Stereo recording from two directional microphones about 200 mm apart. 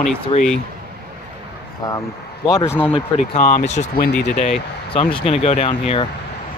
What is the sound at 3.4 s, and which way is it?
Speech, 40° left (ahead or behind).